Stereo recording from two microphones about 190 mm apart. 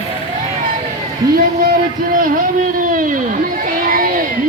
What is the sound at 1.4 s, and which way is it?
A man's voice, 50° right (ahead or behind).